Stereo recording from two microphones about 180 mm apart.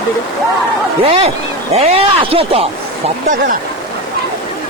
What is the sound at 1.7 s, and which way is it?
Speech, 35° right (ahead or behind).